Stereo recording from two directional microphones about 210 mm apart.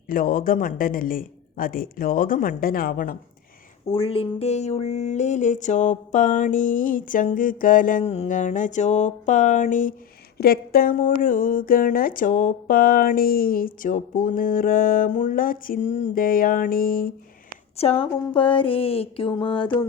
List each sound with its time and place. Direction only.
0.1 s speech: 40° left (ahead or behind)
3.9 s speech: 25° left (ahead or behind); by 17.1 s 45° left (ahead or behind)
17.7 s a sound: 30° left (ahead or behind)